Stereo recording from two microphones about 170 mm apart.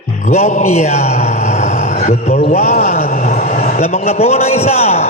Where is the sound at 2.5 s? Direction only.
40° left (ahead or behind).